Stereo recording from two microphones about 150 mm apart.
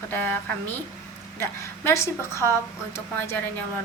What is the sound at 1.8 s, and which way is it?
Speech, 20° left (ahead or behind).